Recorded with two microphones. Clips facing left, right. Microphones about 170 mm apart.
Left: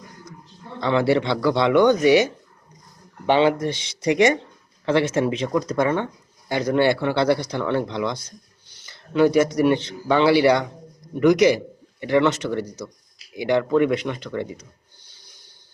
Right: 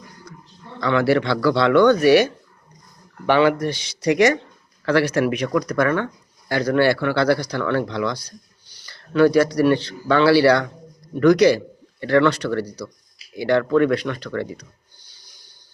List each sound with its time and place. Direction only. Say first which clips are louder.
0.8 s a man's voice: right 1 dB; 25° left (ahead or behind)